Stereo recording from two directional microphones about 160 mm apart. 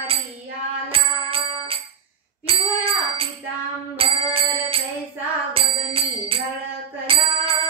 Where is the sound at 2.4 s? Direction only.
35° right (ahead or behind).